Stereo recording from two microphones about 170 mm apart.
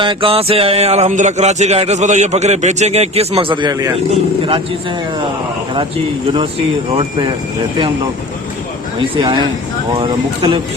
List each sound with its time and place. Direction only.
0.0 s speech: 30° right (ahead or behind)
9.0 s speech: 25° right (ahead or behind)